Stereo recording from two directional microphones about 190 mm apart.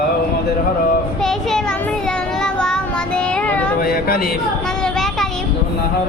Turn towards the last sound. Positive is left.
turn(degrees=0)  # may be behind; listen again after turning